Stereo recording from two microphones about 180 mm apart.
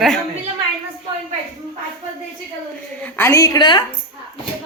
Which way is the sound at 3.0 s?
15° left (ahead or behind).